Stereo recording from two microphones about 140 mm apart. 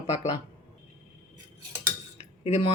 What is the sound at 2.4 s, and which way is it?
Speech, 40° left (ahead or behind).